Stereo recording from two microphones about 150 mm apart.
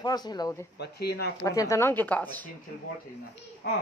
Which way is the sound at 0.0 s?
30° left (ahead or behind).